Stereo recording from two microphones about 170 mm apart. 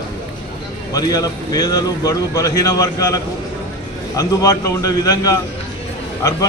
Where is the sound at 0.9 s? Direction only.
20° left (ahead or behind).